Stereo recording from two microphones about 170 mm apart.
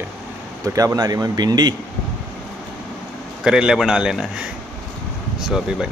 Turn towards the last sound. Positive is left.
turn(degrees=-5)  # may be behind; listen again after turning